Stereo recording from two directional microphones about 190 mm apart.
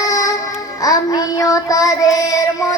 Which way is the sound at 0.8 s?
20° left (ahead or behind).